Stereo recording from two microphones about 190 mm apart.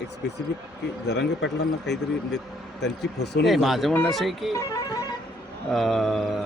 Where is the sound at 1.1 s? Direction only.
65° left (ahead or behind).